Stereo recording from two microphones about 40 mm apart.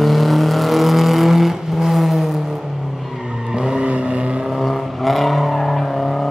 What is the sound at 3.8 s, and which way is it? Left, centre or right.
Vehicle, right.